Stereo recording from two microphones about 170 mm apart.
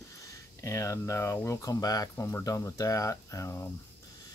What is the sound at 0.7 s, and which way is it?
Speech, 15° left (ahead or behind).